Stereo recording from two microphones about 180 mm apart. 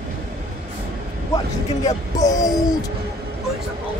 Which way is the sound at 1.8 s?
20° left (ahead or behind).